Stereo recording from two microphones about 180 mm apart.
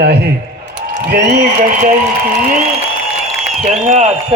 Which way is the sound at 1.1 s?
55° right (ahead or behind).